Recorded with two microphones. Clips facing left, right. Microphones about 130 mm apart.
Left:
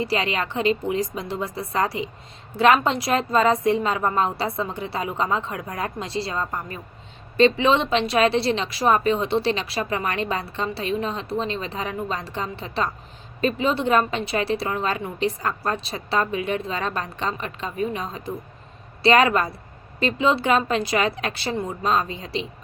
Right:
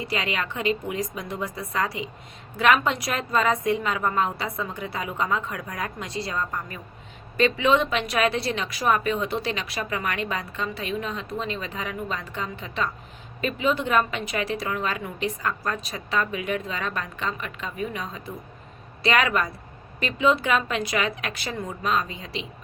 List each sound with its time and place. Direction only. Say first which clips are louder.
0.0 s speech: left 4 dB; 35° left (ahead or behind)